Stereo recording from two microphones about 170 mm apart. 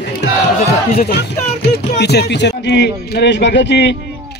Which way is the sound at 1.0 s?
75° left (ahead or behind).